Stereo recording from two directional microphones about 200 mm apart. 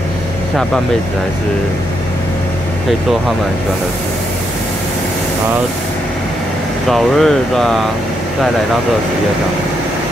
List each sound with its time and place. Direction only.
6.9 s speech: centre (ahead or behind)